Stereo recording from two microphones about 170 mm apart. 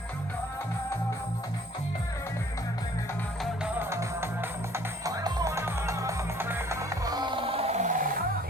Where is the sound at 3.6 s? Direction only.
10° right (ahead or behind); by 8.2 s 55° right (ahead or behind).